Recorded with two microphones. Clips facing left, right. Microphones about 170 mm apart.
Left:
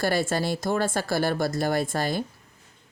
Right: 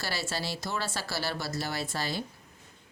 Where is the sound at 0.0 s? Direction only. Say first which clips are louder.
Left 10 dB; 50° left (ahead or behind).